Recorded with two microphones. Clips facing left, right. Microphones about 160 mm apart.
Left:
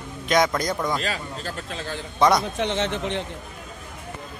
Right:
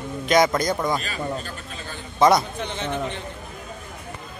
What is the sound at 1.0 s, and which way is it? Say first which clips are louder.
A man's voice: right 1 dB; 90° left.